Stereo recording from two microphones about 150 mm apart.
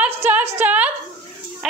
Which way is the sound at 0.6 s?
10° right (ahead or behind).